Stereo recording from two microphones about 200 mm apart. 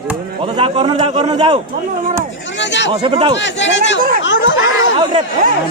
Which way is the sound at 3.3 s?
65° left (ahead or behind).